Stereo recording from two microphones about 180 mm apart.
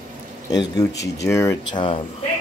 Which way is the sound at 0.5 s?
20° left (ahead or behind).